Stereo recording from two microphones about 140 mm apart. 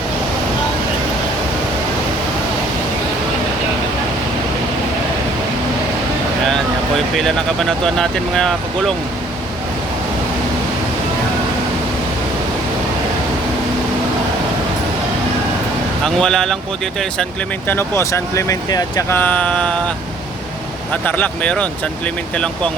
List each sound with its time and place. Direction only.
7.2 s speech: 5° left (ahead or behind)
16.0 s speech: 5° left (ahead or behind)
17.7 s speech: 15° left (ahead or behind)
19.1 s speech: 10° left (ahead or behind)
20.9 s speech: 10° left (ahead or behind)